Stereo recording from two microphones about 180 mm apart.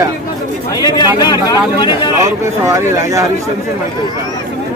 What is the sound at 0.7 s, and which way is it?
Speech, 20° left (ahead or behind).